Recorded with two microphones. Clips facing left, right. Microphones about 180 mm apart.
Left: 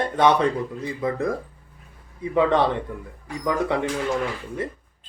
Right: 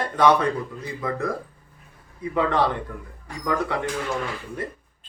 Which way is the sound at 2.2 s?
25° left (ahead or behind).